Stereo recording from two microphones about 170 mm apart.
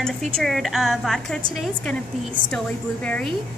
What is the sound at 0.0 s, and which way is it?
A woman's voice, centre (ahead or behind).